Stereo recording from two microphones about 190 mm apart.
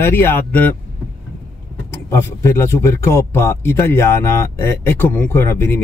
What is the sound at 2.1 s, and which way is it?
Speech, 15° left (ahead or behind).